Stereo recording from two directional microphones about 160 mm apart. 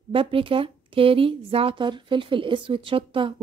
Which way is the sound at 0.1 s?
35° right (ahead or behind).